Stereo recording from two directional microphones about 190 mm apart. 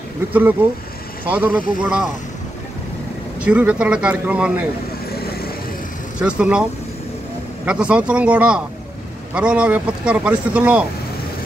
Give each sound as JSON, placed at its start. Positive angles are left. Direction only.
{"t": 0.3, "sound": "speech", "side_deg": -10}
{"t": 3.3, "sound": "speech", "side_deg": -5}
{"t": 5.1, "sound": "vehicle", "side_deg": 55}
{"t": 6.2, "sound": "speech", "side_deg": -5}
{"t": 7.6, "sound": "speech", "side_deg": -5}